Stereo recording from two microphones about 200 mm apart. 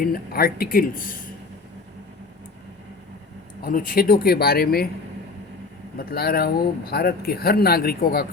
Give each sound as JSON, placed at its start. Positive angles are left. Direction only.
{"t": 0.0, "sound": "speech", "side_deg": 50}
{"t": 3.6, "sound": "speech", "side_deg": 45}
{"t": 6.0, "sound": "speech", "side_deg": 50}